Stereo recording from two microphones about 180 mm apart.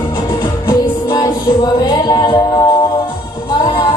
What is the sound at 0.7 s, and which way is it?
Music, 20° left (ahead or behind).